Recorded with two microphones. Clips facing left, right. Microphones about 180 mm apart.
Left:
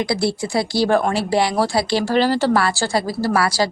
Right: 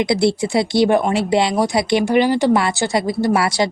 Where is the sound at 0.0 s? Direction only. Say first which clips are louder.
Right 4 dB; 20° right (ahead or behind).